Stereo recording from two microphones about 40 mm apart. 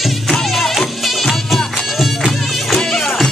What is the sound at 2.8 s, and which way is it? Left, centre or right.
Music, centre.